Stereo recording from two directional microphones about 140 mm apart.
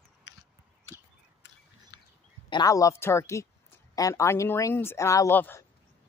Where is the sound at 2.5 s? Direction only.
25° left (ahead or behind).